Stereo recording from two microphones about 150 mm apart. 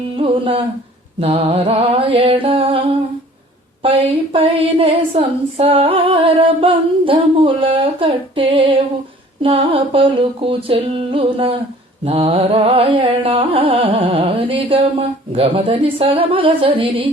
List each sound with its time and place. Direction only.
0.2 s humming: 35° right (ahead or behind)
1.2 s carnatic music: 40° right (ahead or behind)